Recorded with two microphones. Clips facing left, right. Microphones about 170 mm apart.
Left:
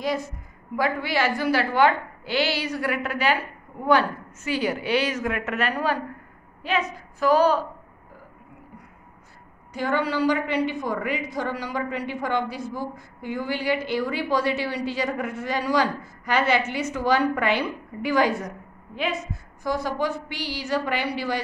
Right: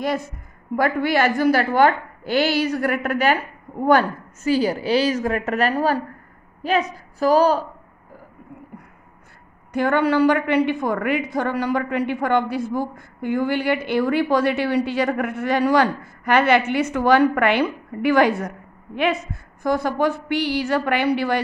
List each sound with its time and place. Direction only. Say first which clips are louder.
0.7 s a woman's voice: right 5 dB; 50° right (ahead or behind)
4.5 s a woman's voice: right 5 dB; 35° right (ahead or behind)
9.7 s a woman's voice: right 6 dB; 60° right (ahead or behind)
19.6 s a woman's voice: right 6 dB; 55° right (ahead or behind)